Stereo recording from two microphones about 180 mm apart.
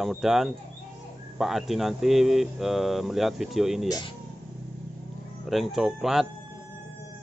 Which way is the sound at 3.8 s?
20° left (ahead or behind).